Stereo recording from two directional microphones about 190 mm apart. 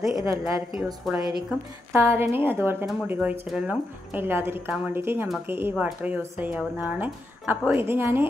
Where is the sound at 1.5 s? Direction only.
Centre (ahead or behind).